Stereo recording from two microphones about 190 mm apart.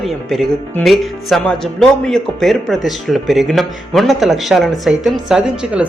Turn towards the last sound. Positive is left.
turn(degrees=-5)  # may be behind; listen again after turning